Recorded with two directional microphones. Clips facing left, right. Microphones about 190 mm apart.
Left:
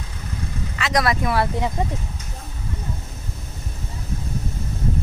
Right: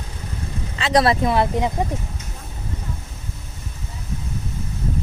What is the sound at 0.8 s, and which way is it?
Speech, 30° right (ahead or behind).